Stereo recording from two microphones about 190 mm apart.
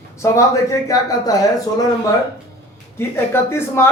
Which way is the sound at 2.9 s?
15° left (ahead or behind).